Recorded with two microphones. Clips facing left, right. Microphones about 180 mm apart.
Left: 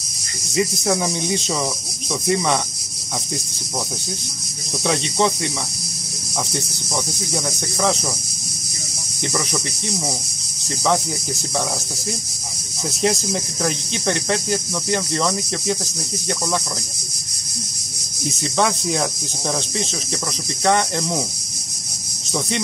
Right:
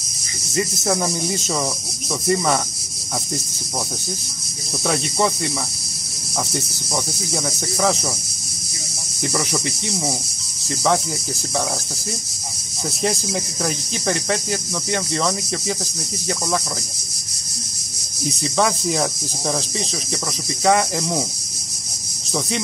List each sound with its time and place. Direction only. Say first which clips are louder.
0.5 s speech: left 2 dB; centre (ahead or behind)
4.8 s speech: left 1 dB; 5° right (ahead or behind)
7.3 s speech: right 1 dB; centre (ahead or behind)
9.3 s speech: right 1 dB; 5° right (ahead or behind)
13.0 s speech: left 2 dB; centre (ahead or behind)
18.3 s speech: even; centre (ahead or behind)
20.6 s speech: right 1 dB; centre (ahead or behind)